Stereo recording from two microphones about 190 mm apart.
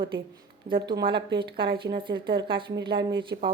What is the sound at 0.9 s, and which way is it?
Speech, 25° right (ahead or behind).